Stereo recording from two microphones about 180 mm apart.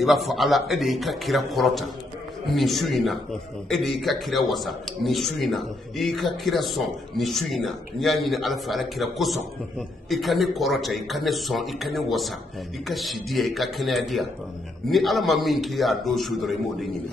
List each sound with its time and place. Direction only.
0.0 s a man's voice: centre (ahead or behind)